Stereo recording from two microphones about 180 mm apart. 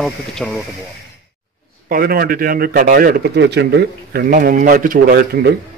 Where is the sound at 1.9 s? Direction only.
55° right (ahead or behind).